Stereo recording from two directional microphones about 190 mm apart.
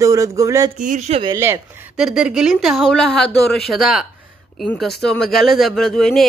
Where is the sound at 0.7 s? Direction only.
40° right (ahead or behind).